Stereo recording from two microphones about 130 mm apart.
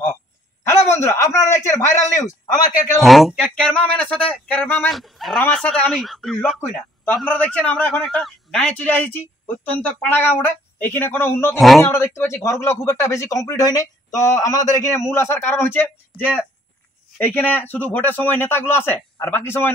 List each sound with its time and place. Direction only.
0.7 s a sound: 20° left (ahead or behind)
3.0 s a man's voice: centre (ahead or behind)
4.9 s speech: centre (ahead or behind)
7.3 s a man's voice: 10° left (ahead or behind)